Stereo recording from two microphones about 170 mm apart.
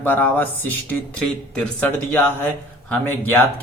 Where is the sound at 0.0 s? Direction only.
10° left (ahead or behind).